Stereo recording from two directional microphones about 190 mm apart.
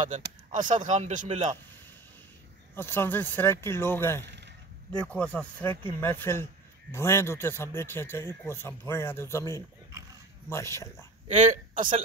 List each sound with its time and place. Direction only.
0.1 s speech: 40° right (ahead or behind)
2.7 s a man's voice: 10° left (ahead or behind)
4.2 s a sound: 65° right (ahead or behind)
4.9 s a man's voice: 5° left (ahead or behind)
11.2 s speech: 40° right (ahead or behind)